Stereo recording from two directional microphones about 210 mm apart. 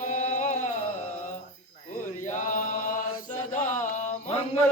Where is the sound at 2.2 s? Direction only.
35° left (ahead or behind).